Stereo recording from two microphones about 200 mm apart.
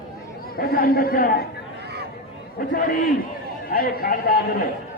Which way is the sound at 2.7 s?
45° left (ahead or behind).